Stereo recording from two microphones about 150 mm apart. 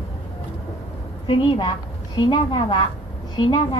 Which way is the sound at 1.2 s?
35° left (ahead or behind).